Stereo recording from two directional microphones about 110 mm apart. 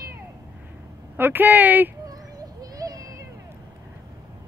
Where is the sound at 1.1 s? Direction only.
20° right (ahead or behind).